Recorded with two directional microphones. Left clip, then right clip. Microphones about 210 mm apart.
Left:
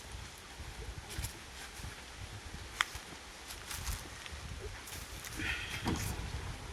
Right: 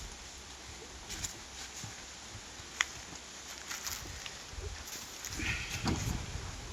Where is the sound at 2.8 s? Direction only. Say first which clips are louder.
Right 1 dB; centre (ahead or behind).